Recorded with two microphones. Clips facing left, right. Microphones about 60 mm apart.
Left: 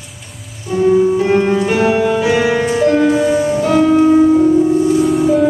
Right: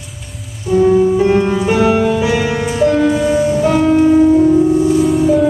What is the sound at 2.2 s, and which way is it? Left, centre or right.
Music, left.